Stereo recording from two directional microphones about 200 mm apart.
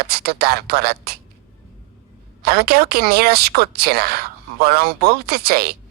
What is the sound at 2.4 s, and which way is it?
Speech, 50° right (ahead or behind).